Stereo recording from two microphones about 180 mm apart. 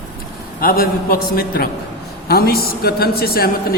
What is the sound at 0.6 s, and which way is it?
A woman's voice, 55° left (ahead or behind).